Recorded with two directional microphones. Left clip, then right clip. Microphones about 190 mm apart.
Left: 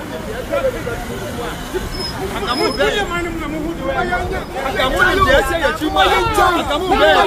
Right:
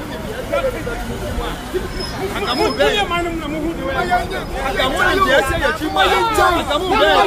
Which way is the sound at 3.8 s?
50° right (ahead or behind).